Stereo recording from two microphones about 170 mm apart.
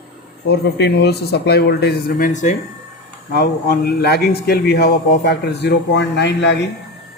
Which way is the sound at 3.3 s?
70° left (ahead or behind).